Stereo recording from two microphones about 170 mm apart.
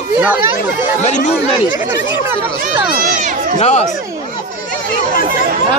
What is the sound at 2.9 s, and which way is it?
Run, 50° right (ahead or behind).